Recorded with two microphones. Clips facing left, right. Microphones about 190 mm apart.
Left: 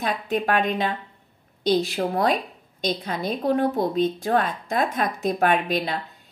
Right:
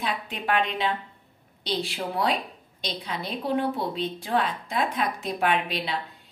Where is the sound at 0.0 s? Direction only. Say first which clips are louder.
Left 6 dB; 45° left (ahead or behind).